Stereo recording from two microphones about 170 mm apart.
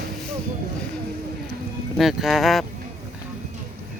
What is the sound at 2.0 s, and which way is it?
Speech, centre (ahead or behind).